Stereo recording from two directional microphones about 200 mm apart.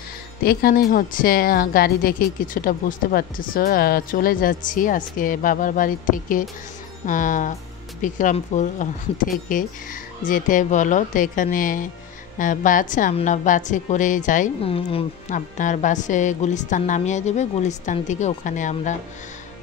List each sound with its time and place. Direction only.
0.4 s speech: 50° left (ahead or behind)
14.7 s speech: 30° left (ahead or behind)